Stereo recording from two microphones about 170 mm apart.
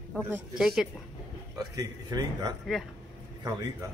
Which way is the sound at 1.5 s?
20° right (ahead or behind).